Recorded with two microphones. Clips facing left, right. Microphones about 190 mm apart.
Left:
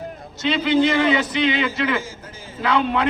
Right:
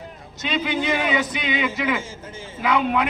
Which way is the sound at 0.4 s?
15° right (ahead or behind).